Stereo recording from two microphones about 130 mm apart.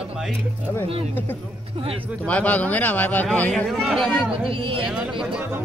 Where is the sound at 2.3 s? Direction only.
10° left (ahead or behind).